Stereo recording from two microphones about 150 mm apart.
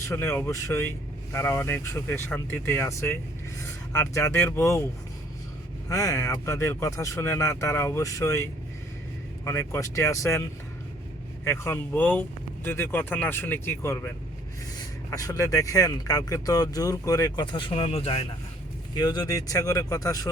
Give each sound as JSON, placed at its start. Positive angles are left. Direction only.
{"t": 0.1, "sound": "speech", "side_deg": 15}
{"t": 5.9, "sound": "speech", "side_deg": 20}
{"t": 11.4, "sound": "speech", "side_deg": 15}
{"t": 15.1, "sound": "speech", "side_deg": 25}
{"t": 18.9, "sound": "speech", "side_deg": 25}